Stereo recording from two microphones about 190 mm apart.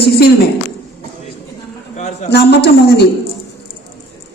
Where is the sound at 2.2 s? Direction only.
60° left (ahead or behind).